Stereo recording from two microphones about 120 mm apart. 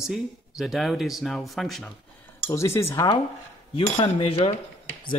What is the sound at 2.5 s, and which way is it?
Speech, 25° left (ahead or behind).